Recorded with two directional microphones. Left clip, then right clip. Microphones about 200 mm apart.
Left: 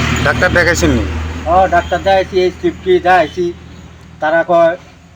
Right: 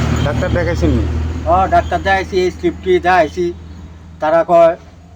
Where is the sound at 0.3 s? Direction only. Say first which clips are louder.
Left 8 dB; 5° left (ahead or behind).